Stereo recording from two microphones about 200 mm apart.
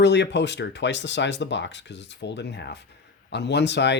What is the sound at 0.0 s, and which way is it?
Speech, 60° left (ahead or behind).